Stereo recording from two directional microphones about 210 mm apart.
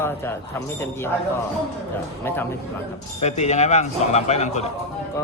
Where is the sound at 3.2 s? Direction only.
30° left (ahead or behind).